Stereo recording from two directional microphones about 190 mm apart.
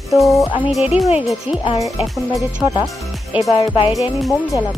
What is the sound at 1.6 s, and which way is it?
Speech, 20° left (ahead or behind).